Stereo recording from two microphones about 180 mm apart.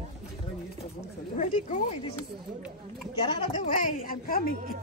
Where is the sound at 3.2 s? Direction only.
30° left (ahead or behind).